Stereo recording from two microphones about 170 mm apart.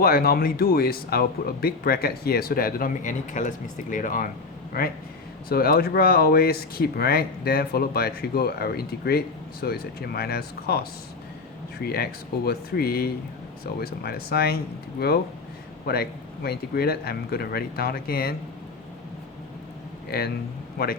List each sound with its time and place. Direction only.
0.0 s speech: 60° left (ahead or behind)
20.1 s speech: 65° left (ahead or behind)